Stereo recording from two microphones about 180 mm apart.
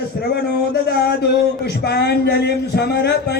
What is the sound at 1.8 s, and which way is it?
Speech, 65° left (ahead or behind).